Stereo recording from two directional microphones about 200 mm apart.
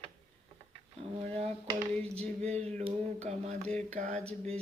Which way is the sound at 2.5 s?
35° right (ahead or behind).